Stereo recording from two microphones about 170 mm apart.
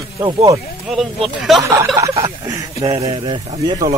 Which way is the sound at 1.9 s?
20° right (ahead or behind).